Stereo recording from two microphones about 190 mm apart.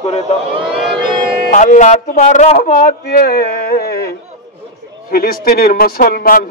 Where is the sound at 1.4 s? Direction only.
40° left (ahead or behind).